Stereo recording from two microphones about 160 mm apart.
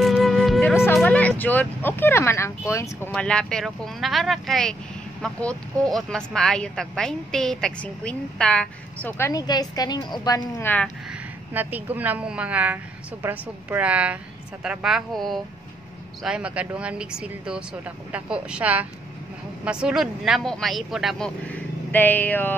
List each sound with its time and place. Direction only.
0.0 s wind instrument: centre (ahead or behind)
0.9 s speech: 10° left (ahead or behind)
9.3 s a woman's voice: 25° left (ahead or behind)
10.6 s speech: 10° left (ahead or behind)
11.1 s a woman's voice: 10° right (ahead or behind)
21.5 s speech: 10° left (ahead or behind)